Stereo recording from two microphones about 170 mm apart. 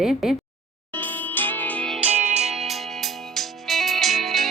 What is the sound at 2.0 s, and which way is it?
Music, 40° right (ahead or behind).